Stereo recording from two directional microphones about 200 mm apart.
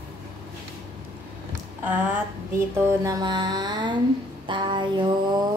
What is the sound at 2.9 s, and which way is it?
Mantra, 20° right (ahead or behind).